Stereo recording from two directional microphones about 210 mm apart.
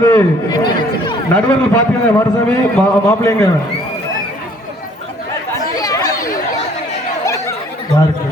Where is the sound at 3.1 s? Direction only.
10° left (ahead or behind).